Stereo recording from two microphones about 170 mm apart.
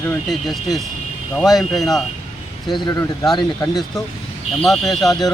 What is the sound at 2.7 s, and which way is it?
Speech, 20° left (ahead or behind).